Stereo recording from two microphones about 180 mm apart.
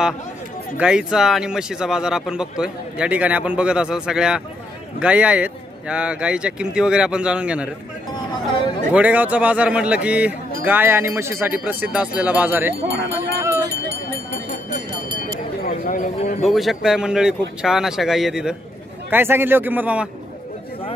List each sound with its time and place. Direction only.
0.7 s speech: 5° right (ahead or behind)
8.9 s speech: 10° right (ahead or behind)
15.6 s a sound: 50° left (ahead or behind)
16.2 s a man's voice: 35° left (ahead or behind)
16.4 s speech: centre (ahead or behind)